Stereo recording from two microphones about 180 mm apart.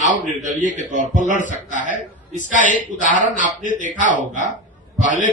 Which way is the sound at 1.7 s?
45° right (ahead or behind).